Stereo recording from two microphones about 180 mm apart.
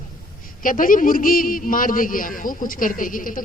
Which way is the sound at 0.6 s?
50° left (ahead or behind).